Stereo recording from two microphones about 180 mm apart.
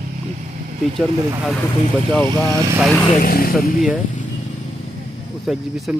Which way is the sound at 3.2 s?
55° left (ahead or behind).